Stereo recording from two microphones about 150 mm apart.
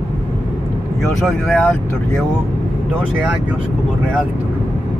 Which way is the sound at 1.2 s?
5° left (ahead or behind).